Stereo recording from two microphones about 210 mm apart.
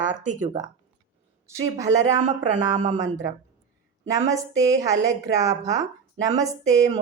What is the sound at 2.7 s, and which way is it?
Speech, 35° right (ahead or behind).